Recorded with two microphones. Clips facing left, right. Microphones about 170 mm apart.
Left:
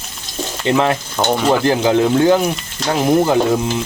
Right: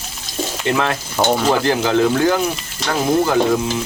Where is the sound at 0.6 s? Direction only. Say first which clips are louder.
Left 4 dB; 20° left (ahead or behind).